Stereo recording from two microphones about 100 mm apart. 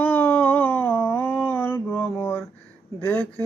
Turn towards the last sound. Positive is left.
turn(degrees=20)  # may be behind; listen again after turning